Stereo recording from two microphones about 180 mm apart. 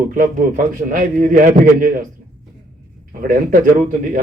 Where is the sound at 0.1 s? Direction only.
50° right (ahead or behind).